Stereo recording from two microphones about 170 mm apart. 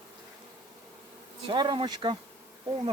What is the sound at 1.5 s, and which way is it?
Insect, 30° right (ahead or behind).